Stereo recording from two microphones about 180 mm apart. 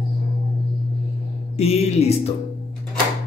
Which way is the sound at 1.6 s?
35° left (ahead or behind).